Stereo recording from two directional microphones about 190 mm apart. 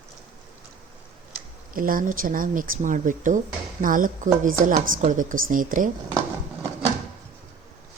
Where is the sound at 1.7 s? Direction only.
45° right (ahead or behind).